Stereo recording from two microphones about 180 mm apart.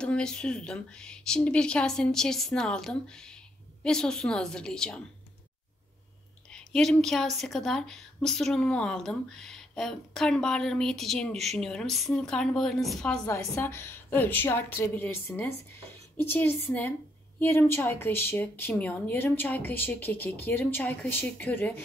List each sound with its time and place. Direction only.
0.0 s a woman's voice: 5° left (ahead or behind)
6.5 s a woman's voice: 5° left (ahead or behind)
13.2 s a woman's voice: 15° left (ahead or behind)